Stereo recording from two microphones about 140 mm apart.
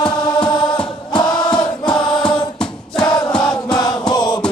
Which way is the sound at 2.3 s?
30° left (ahead or behind).